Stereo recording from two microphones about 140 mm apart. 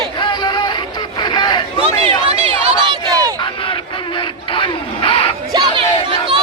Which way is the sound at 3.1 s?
25° right (ahead or behind).